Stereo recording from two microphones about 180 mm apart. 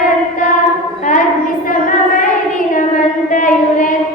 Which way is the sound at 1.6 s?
45° left (ahead or behind).